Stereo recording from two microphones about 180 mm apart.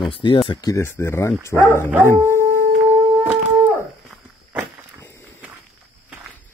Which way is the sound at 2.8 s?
10° right (ahead or behind).